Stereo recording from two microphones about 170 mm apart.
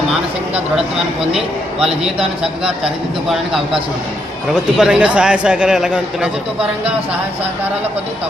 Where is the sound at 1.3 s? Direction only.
35° right (ahead or behind).